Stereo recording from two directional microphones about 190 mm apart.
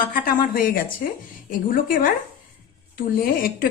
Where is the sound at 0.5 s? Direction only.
50° left (ahead or behind).